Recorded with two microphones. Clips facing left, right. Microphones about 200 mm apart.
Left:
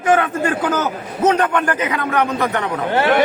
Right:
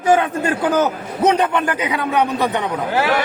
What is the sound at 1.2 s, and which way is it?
A man's voice, 15° right (ahead or behind).